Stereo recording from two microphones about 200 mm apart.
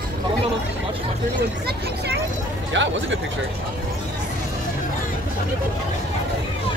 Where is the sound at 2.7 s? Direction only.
65° right (ahead or behind).